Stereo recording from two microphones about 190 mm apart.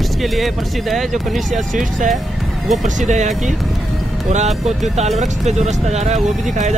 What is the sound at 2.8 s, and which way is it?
Speech, 40° right (ahead or behind).